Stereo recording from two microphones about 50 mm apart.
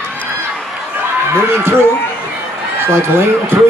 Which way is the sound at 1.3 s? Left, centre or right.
Right.